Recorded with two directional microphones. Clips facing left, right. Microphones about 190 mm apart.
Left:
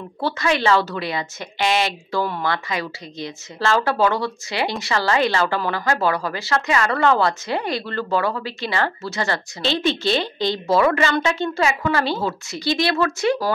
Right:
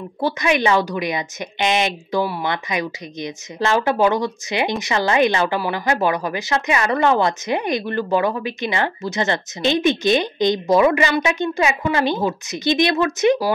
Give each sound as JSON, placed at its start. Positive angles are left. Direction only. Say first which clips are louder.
{"t": 0.2, "sound": "a woman's voice", "louder": "right 2 dB", "side_deg": -15}